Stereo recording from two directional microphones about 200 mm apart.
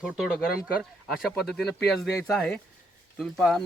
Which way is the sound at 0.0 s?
Centre (ahead or behind).